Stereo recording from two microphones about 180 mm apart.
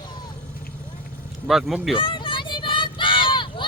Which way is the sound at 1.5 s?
Centre (ahead or behind).